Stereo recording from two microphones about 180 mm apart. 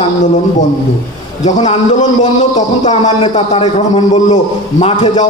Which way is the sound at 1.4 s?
35° left (ahead or behind).